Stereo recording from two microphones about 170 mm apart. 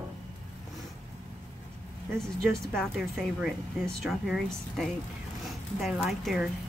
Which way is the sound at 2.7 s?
Centre (ahead or behind).